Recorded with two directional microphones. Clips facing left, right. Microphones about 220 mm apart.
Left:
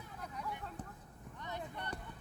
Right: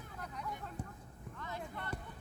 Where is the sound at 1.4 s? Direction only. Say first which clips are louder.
Even; 20° left (ahead or behind).